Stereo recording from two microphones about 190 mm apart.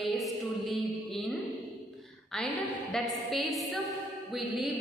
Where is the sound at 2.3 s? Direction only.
Centre (ahead or behind).